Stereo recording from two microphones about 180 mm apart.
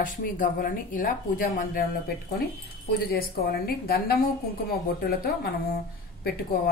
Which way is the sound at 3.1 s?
60° left (ahead or behind).